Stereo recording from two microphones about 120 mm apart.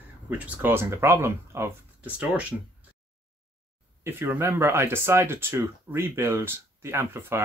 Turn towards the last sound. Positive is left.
turn(degrees=-20)  # may be behind; listen again after turning